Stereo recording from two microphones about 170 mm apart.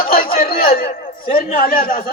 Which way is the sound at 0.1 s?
60° left (ahead or behind).